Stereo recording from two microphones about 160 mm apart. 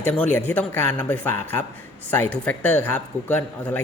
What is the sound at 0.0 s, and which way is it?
A man's voice, 10° left (ahead or behind).